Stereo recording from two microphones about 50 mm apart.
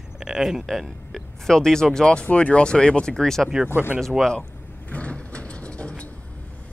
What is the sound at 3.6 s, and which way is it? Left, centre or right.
Speech, left.